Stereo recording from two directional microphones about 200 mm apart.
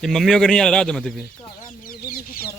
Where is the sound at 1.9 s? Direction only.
45° left (ahead or behind).